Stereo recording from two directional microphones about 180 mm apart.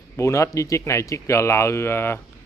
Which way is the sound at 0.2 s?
15° left (ahead or behind).